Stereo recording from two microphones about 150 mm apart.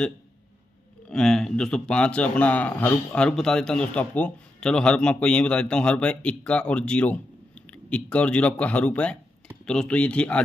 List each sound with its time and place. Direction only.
1.1 s a man's voice: 5° left (ahead or behind)